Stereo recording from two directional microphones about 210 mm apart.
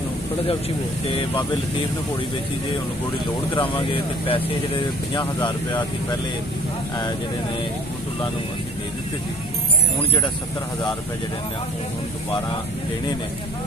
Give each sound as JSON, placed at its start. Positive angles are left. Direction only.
{"t": 3.5, "sound": "speech", "side_deg": 25}